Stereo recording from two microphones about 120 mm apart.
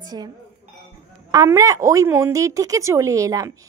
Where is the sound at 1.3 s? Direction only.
30° right (ahead or behind).